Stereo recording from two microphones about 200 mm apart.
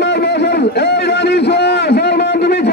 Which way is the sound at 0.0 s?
60° left (ahead or behind).